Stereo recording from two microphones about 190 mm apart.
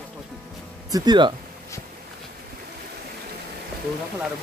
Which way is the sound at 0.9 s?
20° right (ahead or behind).